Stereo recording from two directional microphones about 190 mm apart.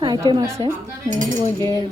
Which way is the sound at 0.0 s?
20° right (ahead or behind).